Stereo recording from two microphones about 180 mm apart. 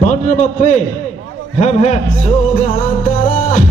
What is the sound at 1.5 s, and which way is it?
Music, 40° left (ahead or behind).